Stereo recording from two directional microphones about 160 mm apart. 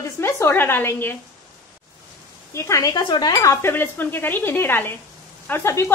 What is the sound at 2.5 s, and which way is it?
A woman's voice, 20° left (ahead or behind).